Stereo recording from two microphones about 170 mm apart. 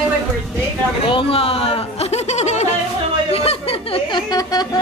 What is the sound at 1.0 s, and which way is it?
Speech, 30° left (ahead or behind).